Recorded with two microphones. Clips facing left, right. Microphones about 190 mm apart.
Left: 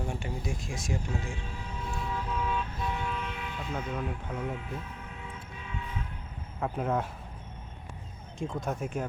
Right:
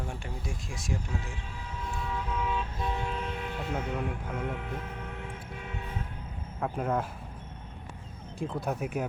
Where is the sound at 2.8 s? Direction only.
30° right (ahead or behind).